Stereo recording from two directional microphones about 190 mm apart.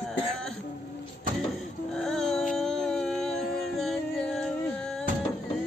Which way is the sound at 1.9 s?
Centre (ahead or behind).